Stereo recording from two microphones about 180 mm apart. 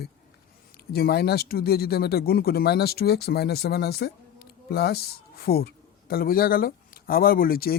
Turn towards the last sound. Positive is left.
turn(degrees=55)  # may be behind; listen again after turning